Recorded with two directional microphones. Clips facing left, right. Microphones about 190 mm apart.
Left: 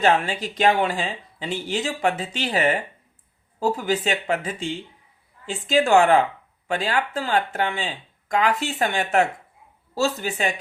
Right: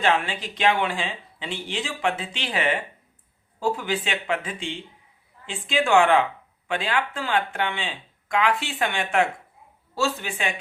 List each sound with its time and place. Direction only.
0.0 s speech: 40° left (ahead or behind)